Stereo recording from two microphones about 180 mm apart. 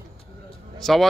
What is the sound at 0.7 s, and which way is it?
Speech, centre (ahead or behind).